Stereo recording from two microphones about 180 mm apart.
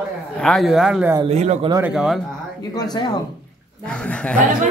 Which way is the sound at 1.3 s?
35° right (ahead or behind).